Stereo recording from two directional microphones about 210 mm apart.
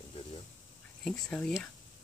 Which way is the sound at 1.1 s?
10° left (ahead or behind).